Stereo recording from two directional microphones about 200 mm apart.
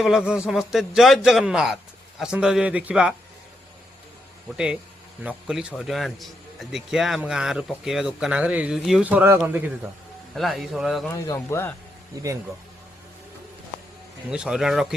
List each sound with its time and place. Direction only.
0.0 s a man's voice: 5° right (ahead or behind)
4.5 s a man's voice: 5° right (ahead or behind)
11.3 s speech: 15° left (ahead or behind)
12.1 s speech: 15° right (ahead or behind)
14.3 s a man's voice: 5° right (ahead or behind)